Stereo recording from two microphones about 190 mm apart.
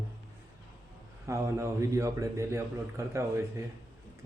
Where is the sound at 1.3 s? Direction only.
15° right (ahead or behind).